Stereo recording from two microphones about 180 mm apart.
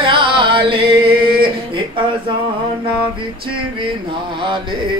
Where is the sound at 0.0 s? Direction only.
30° right (ahead or behind).